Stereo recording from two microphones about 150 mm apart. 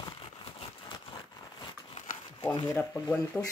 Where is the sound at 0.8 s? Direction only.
30° left (ahead or behind).